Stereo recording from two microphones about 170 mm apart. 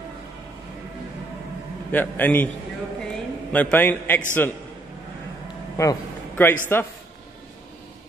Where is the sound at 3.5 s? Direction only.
10° left (ahead or behind).